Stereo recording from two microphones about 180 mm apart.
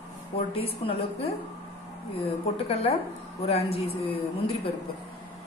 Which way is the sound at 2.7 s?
35° left (ahead or behind).